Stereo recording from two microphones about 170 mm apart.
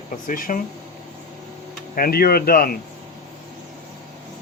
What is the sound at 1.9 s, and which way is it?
Speech, 60° left (ahead or behind).